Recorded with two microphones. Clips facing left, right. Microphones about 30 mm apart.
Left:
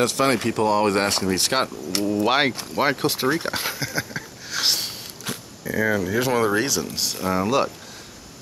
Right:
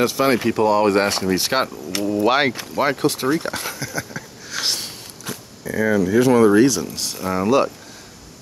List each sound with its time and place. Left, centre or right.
0.0 s speech: centre; by 4.2 s left
4.5 s a sound: centre
5.6 s speech: centre